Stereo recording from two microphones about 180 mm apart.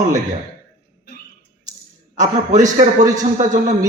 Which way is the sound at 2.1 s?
40° right (ahead or behind).